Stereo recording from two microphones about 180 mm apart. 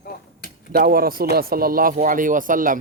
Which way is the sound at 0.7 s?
55° right (ahead or behind).